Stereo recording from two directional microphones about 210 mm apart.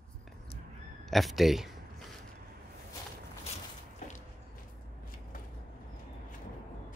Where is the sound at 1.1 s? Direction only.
Centre (ahead or behind).